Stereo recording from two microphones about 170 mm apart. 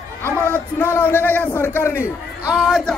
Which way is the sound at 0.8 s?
10° left (ahead or behind).